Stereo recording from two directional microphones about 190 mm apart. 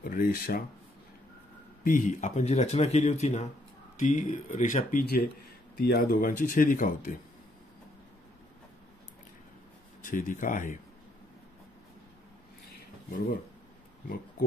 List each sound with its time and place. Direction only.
0.0 s speech: 50° left (ahead or behind)
1.9 s speech: 40° left (ahead or behind)
10.0 s speech: 45° left (ahead or behind)